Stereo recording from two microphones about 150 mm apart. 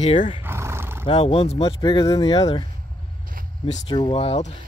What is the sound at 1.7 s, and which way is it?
Speech, 25° left (ahead or behind).